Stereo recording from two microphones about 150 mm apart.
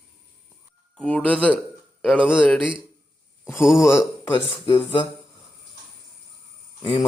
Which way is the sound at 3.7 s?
20° left (ahead or behind).